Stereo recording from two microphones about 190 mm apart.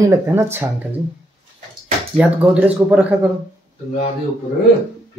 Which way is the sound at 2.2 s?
5° right (ahead or behind).